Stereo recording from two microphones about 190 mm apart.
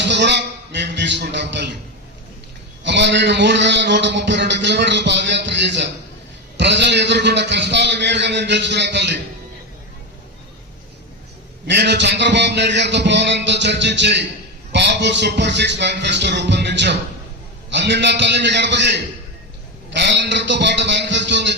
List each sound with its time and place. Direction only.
0.0 s a man's voice: 65° right (ahead or behind)
2.8 s a man's voice: 65° right (ahead or behind)
11.7 s a man's voice: 65° right (ahead or behind)